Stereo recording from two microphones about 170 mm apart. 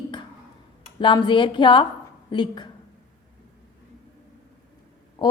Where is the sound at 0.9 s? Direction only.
30° left (ahead or behind).